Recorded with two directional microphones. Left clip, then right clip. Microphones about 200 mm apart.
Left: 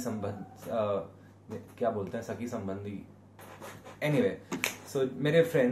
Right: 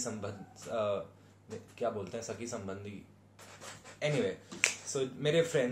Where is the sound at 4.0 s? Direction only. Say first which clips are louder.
Left 4 dB; 10° right (ahead or behind).